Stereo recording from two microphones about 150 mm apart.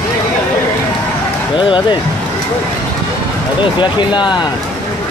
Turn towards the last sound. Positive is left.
turn(degrees=30)  # may be behind; listen again after turning